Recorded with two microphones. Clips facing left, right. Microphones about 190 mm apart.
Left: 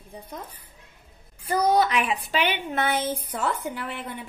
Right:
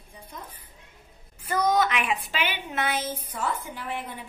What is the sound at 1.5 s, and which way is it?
A woman's voice, 35° left (ahead or behind).